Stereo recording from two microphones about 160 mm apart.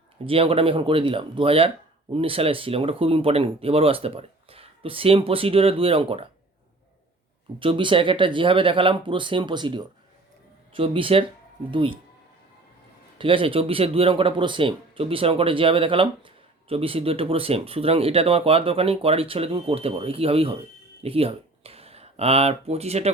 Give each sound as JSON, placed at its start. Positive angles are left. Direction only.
{"t": 0.3, "sound": "speech", "side_deg": -35}
{"t": 7.6, "sound": "speech", "side_deg": -30}
{"t": 13.1, "sound": "speech", "side_deg": -35}